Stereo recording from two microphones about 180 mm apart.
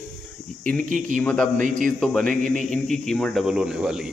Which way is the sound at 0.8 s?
45° right (ahead or behind).